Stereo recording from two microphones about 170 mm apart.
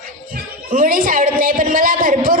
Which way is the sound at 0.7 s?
55° right (ahead or behind).